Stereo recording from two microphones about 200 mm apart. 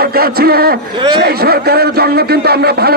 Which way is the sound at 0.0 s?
50° right (ahead or behind).